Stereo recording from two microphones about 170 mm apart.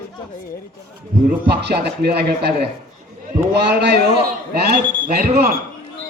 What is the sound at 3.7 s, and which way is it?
Speech, 80° right.